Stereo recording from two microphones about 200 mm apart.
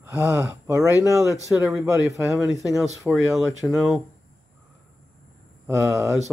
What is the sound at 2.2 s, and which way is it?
Speech, 15° left (ahead or behind).